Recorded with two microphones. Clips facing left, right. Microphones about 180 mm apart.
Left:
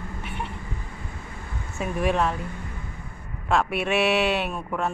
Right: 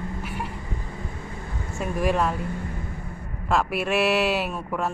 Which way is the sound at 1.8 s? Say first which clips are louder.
Even; centre (ahead or behind).